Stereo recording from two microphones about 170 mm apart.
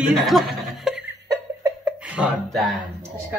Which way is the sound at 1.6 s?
10° right (ahead or behind).